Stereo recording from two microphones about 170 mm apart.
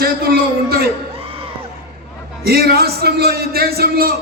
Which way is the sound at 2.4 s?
65° right (ahead or behind).